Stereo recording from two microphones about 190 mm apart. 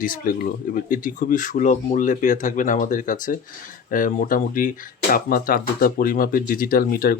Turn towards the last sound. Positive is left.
turn(degrees=50)  # may be behind; listen again after turning